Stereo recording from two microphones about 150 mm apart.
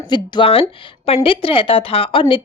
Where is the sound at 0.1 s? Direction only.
35° left (ahead or behind).